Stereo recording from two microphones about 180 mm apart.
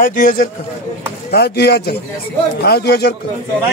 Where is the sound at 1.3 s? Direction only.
65° left (ahead or behind).